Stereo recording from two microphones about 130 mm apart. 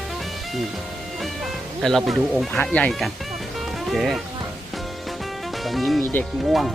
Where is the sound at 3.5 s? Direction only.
Centre (ahead or behind).